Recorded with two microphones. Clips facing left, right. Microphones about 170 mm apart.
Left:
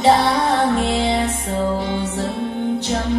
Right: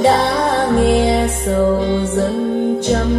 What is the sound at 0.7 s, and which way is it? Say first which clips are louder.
Music: right 6 dB; 45° right (ahead or behind).